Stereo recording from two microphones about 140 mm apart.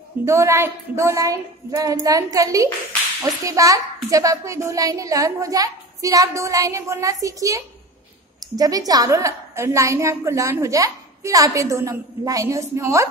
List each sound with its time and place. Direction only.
0.2 s a woman's voice: 20° right (ahead or behind)